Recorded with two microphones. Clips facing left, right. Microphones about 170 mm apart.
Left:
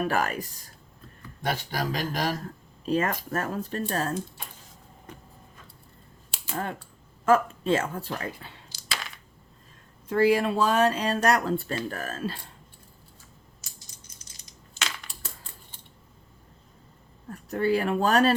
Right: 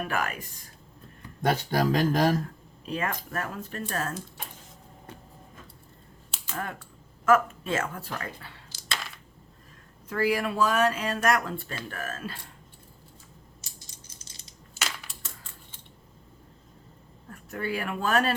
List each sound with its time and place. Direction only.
0.0 s speech: 35° left (ahead or behind)
1.4 s speech: 45° right (ahead or behind)
2.8 s speech: 40° left (ahead or behind)
6.4 s speech: 30° left (ahead or behind)
10.1 s speech: 25° left (ahead or behind)
13.6 s a sound: 30° right (ahead or behind)
17.3 s speech: 35° left (ahead or behind)